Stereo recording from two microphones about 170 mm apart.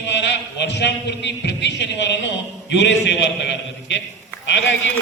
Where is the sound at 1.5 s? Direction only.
90° left.